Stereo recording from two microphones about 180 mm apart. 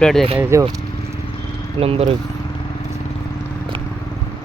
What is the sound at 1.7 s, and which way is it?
Speech, 30° right (ahead or behind).